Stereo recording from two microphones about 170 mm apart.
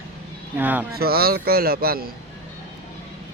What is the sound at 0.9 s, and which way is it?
Speech, 65° right (ahead or behind).